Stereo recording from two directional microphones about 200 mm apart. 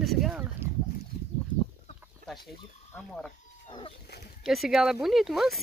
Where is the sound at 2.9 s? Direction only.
5° left (ahead or behind).